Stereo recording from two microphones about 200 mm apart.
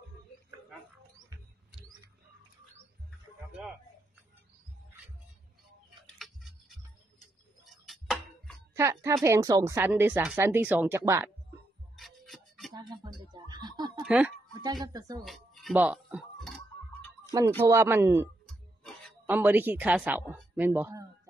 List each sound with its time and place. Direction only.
6.1 s music: centre (ahead or behind)
7.6 s tick-tock: centre (ahead or behind)
8.7 s a woman's voice: 15° right (ahead or behind)
12.0 s music: centre (ahead or behind)
12.7 s a sound: 20° right (ahead or behind)
14.0 s speech: 5° right (ahead or behind)
14.9 s speech: 20° right (ahead or behind)
15.2 s music: centre (ahead or behind)
15.8 s a sound: 5° right (ahead or behind)
17.3 s a woman's voice: 15° right (ahead or behind)
18.5 s a sound: centre (ahead or behind)
19.2 s a woman's voice: 10° right (ahead or behind)